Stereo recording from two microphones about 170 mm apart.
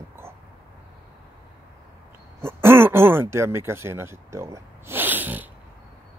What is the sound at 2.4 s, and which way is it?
Speech, 15° right (ahead or behind).